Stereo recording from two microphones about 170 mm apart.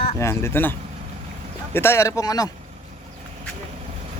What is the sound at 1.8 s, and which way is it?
Speech, 15° left (ahead or behind).